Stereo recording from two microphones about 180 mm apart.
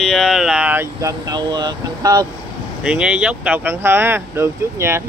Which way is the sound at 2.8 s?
5° right (ahead or behind).